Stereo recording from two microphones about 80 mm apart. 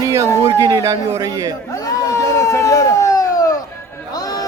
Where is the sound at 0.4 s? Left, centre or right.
Right.